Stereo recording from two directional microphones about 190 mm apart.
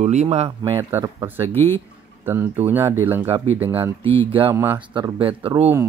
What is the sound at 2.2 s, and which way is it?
Speech, 10° right (ahead or behind).